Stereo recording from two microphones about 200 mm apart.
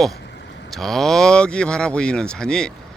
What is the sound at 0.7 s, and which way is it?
Speech, centre (ahead or behind).